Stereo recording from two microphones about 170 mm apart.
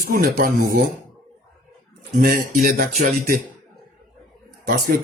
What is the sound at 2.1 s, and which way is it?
Speech, 55° right (ahead or behind).